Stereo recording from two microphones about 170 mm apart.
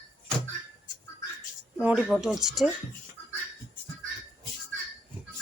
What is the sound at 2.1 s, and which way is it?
Speech, 5° right (ahead or behind).